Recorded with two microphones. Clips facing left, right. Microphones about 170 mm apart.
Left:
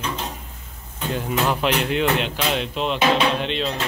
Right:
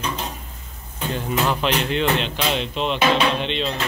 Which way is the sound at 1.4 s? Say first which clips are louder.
Even; 10° left (ahead or behind).